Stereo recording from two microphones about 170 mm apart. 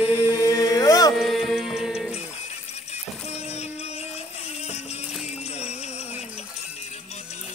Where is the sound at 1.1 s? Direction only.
Centre (ahead or behind).